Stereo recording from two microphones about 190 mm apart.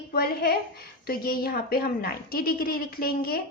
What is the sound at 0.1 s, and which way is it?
A woman's voice, 55° left (ahead or behind).